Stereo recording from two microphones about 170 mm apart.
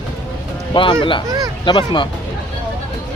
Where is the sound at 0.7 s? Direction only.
30° left (ahead or behind).